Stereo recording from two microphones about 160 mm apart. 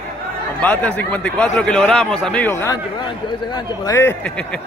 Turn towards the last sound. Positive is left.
turn(degrees=15)  # may be behind; listen again after turning